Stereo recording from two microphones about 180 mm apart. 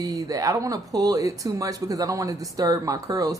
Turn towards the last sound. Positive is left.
turn(degrees=-20)  # may be behind; listen again after turning